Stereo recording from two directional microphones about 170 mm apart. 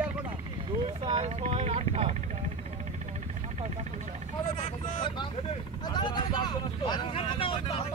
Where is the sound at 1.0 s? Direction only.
35° right (ahead or behind).